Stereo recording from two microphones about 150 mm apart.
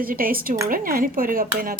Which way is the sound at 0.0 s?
75° right (ahead or behind).